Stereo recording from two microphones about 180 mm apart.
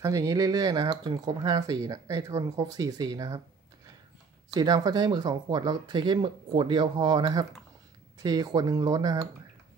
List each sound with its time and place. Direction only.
0.0 s speech: 20° right (ahead or behind)